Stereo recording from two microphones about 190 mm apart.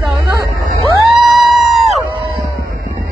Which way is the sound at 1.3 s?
Centre (ahead or behind).